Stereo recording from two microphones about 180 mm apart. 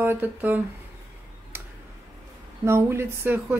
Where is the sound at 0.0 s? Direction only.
10° right (ahead or behind).